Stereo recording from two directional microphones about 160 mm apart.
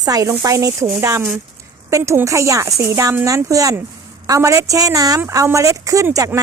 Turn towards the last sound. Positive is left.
turn(degrees=-20)  # may be behind; listen again after turning